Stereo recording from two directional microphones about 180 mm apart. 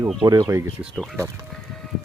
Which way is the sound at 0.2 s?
20° right (ahead or behind).